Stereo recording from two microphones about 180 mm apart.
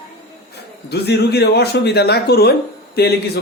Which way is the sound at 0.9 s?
65° left (ahead or behind).